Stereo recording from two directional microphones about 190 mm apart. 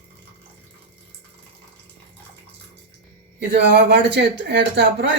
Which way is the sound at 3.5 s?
65° right (ahead or behind).